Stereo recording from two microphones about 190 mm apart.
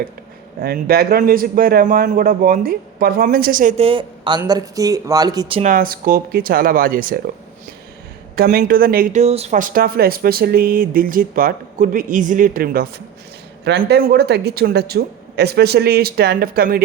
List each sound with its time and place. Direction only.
0.6 s a man's voice: 55° right (ahead or behind); by 5.6 s 25° right (ahead or behind)
5.6 s a man's voice: 45° right (ahead or behind)
8.4 s a man's voice: 50° right (ahead or behind)
13.7 s speech: 60° right (ahead or behind)